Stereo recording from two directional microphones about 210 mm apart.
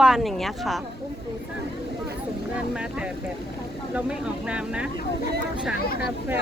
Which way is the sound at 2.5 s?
5° right (ahead or behind).